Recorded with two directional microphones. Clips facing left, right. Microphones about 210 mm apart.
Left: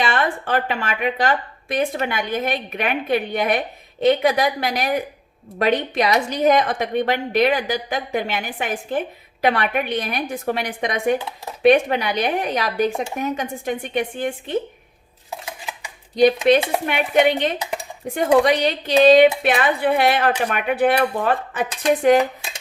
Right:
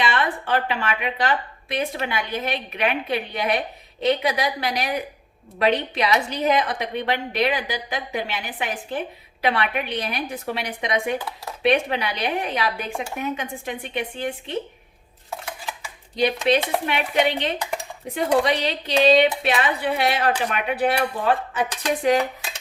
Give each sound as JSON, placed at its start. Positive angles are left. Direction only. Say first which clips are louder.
{"t": 0.0, "sound": "a woman's voice", "louder": "left 2 dB", "side_deg": 45}
{"t": 16.1, "sound": "a woman's voice", "louder": "left 6 dB", "side_deg": 45}